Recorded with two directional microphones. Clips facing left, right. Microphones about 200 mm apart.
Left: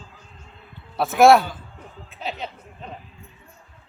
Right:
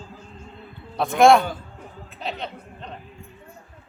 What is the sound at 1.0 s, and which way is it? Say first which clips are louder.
Speech: left 1 dB; 5° left (ahead or behind).